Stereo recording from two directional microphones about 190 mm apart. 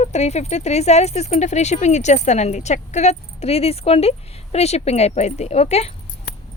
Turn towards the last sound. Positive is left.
turn(degrees=35)  # may be behind; listen again after turning